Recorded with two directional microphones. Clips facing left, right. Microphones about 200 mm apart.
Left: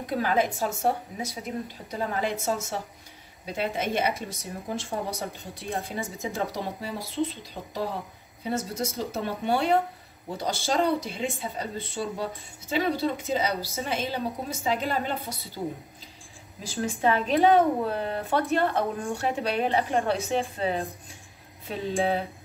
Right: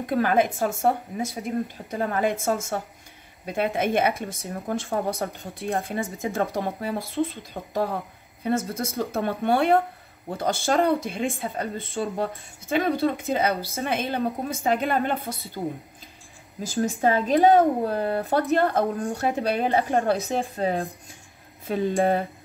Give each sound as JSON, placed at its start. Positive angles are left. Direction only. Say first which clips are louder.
{"t": 0.1, "sound": "speech", "louder": "right 4 dB", "side_deg": -50}
{"t": 16.6, "sound": "speech", "louder": "right 3 dB", "side_deg": -45}